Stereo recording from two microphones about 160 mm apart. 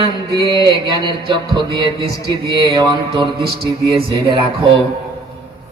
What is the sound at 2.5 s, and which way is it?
Music, 25° right (ahead or behind).